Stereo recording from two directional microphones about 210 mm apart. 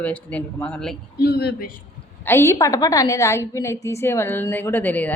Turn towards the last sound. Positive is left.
turn(degrees=10)  # may be behind; listen again after turning